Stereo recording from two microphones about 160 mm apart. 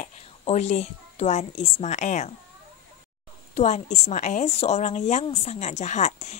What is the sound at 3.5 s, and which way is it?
A woman's voice, 45° left (ahead or behind).